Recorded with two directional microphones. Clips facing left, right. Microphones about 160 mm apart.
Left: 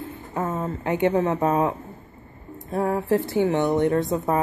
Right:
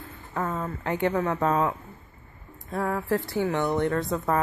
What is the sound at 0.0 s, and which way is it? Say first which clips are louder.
A woman's voice: left 3 dB; 20° left (ahead or behind).